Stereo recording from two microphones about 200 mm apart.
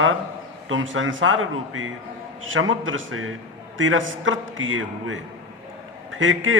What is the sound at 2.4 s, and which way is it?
Speech, 80° right.